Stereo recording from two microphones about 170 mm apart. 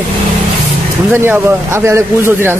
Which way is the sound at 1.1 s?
10° right (ahead or behind).